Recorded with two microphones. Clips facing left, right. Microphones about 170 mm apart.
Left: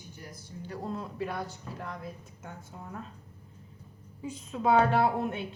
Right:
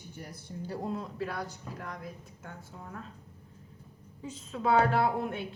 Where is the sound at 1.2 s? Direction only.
20° left (ahead or behind).